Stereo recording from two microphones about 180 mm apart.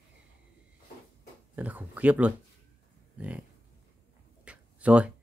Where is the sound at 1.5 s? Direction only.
10° right (ahead or behind).